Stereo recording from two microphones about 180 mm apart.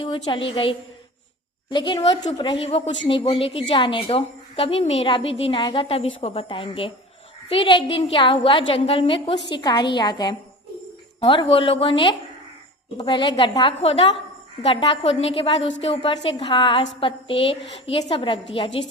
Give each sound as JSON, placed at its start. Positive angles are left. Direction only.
{"t": 0.0, "sound": "a woman's voice", "side_deg": 30}